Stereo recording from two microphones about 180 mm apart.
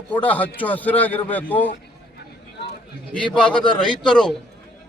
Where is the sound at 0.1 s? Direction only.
10° left (ahead or behind).